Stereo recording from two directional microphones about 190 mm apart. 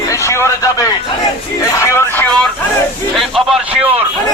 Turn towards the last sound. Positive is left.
turn(degrees=-5)  # may be behind; listen again after turning